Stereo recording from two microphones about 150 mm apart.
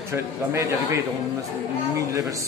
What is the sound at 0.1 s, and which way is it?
Speech, 20° right (ahead or behind).